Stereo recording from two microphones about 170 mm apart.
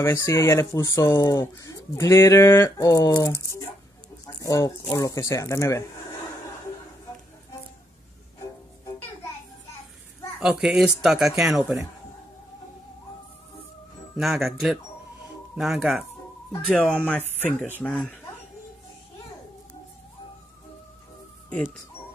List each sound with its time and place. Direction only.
0.0 s speech: 15° left (ahead or behind)
10.4 s speech: 5° right (ahead or behind)
14.1 s speech: centre (ahead or behind)
16.6 s speech: 5° left (ahead or behind)